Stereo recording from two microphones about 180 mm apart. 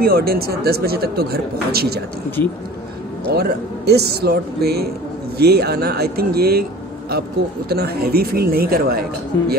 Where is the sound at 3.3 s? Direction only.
60° right (ahead or behind).